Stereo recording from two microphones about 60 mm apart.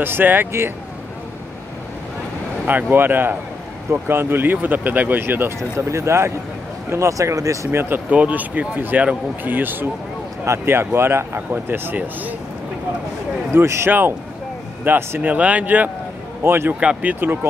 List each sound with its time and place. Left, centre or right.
0.0 s speech: right
2.6 s speech: right
5.8 s speech: right
7.7 s speech: right
8.1 s speech: right
10.4 s speech: right
13.5 s speech: right
15.3 s speech: right
16.4 s speech: right
16.8 s speech: right